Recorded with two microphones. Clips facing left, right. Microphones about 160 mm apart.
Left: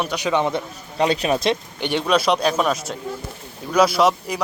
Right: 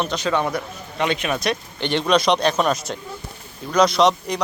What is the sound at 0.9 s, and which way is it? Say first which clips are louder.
Speech: left 3 dB; 35° left (ahead or behind).